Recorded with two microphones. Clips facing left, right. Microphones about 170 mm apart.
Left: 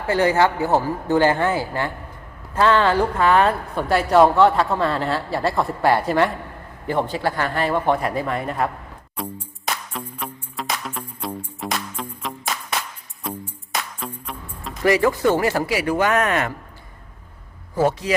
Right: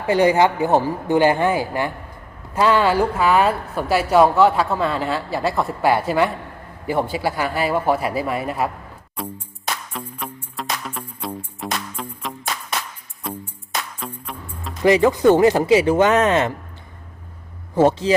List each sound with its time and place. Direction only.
0.1 s a woman's voice: 15° right (ahead or behind)
10.1 s music: 5° right (ahead or behind)
14.8 s speech: 20° right (ahead or behind)
17.7 s speech: 25° right (ahead or behind)